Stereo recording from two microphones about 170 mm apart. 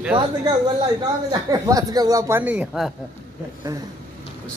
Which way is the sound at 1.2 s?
20° right (ahead or behind).